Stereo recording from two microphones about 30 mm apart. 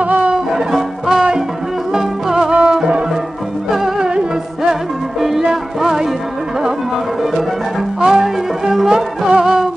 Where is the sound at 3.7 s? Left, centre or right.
Centre.